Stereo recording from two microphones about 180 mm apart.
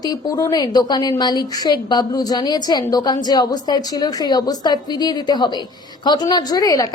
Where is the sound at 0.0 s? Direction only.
20° left (ahead or behind).